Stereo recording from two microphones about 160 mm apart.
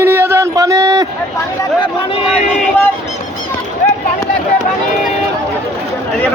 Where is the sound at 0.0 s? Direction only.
15° right (ahead or behind).